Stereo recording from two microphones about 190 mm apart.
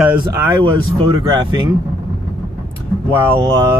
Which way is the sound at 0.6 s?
25° right (ahead or behind).